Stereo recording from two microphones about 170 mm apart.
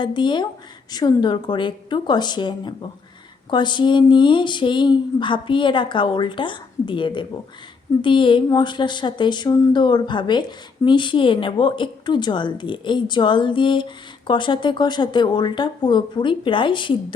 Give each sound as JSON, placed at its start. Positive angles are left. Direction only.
{"t": 0.0, "sound": "a woman's voice", "side_deg": 25}